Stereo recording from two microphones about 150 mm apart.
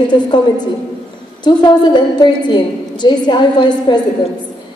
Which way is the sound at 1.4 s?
30° left (ahead or behind).